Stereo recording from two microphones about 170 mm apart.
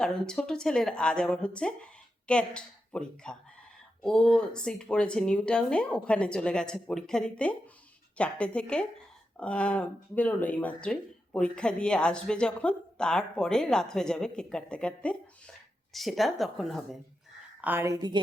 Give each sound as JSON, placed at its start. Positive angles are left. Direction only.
{"t": 0.0, "sound": "speech", "side_deg": 5}
{"t": 17.6, "sound": "a woman's voice", "side_deg": -15}